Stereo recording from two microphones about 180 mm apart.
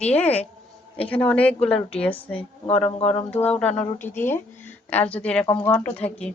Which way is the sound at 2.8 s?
35° left (ahead or behind).